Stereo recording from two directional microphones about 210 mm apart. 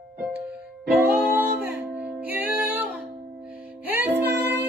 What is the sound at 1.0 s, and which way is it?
Music, 10° right (ahead or behind).